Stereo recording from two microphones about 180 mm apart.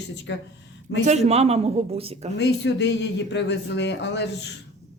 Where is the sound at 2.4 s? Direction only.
70° left (ahead or behind).